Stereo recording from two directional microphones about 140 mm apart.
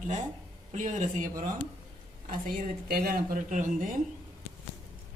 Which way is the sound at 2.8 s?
90° right.